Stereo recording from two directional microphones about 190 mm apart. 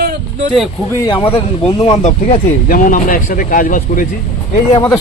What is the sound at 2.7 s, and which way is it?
Speech, 45° left (ahead or behind).